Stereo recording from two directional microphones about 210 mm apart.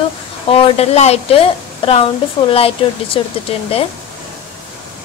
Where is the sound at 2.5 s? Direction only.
25° left (ahead or behind).